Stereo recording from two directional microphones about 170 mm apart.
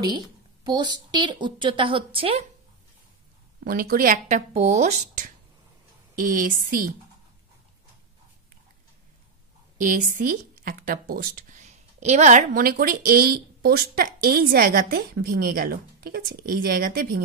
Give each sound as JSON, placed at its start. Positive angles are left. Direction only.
{"t": 0.7, "sound": "a woman's voice", "side_deg": -25}
{"t": 3.6, "sound": "speech", "side_deg": -60}
{"t": 9.8, "sound": "speech", "side_deg": -50}